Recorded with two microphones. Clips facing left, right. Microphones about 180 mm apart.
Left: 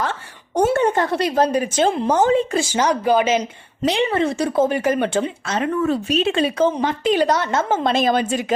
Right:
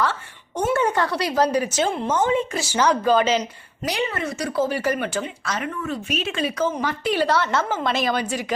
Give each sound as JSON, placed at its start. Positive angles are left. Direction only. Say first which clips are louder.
{"t": 0.5, "sound": "a sound", "louder": "left 4 dB", "side_deg": 35}
{"t": 1.2, "sound": "speech", "louder": "left 2 dB", "side_deg": 25}
{"t": 2.0, "sound": "speech", "louder": "left 4 dB", "side_deg": 35}
{"t": 2.7, "sound": "speech", "louder": "even", "side_deg": 15}
{"t": 3.8, "sound": "speech", "louder": "left 7 dB", "side_deg": 25}